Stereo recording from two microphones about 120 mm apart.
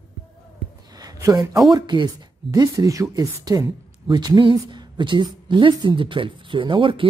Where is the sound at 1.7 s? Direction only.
35° right (ahead or behind).